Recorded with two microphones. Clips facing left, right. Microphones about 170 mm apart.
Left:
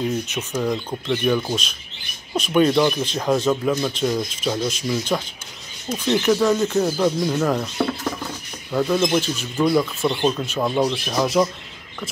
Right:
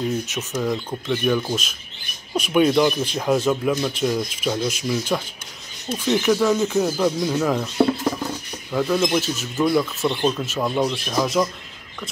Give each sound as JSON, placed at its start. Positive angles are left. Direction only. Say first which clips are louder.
{"t": 0.3, "sound": "speech", "louder": "left 1 dB", "side_deg": 0}
{"t": 8.7, "sound": "speech", "louder": "left 1 dB", "side_deg": 5}